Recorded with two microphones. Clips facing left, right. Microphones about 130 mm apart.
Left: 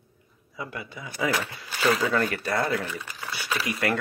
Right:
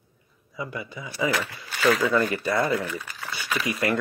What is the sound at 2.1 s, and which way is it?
Speech, centre (ahead or behind).